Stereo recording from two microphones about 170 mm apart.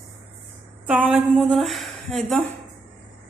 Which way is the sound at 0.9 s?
5° right (ahead or behind).